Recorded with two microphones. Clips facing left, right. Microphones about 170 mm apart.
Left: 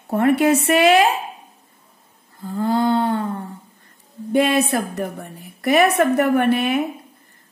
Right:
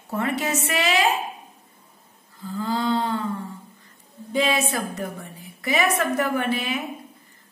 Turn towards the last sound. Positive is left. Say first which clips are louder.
# left 8 dB
turn(degrees=60)  # may be behind; listen again after turning